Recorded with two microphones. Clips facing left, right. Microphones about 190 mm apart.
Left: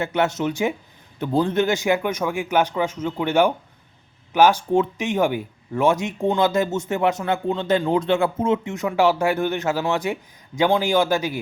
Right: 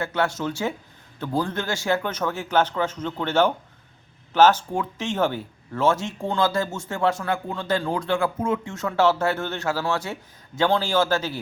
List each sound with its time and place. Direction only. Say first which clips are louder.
0.0 s speech: left 3 dB; 20° left (ahead or behind)